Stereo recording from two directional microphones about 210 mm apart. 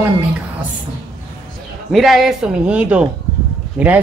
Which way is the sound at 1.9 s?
Centre (ahead or behind).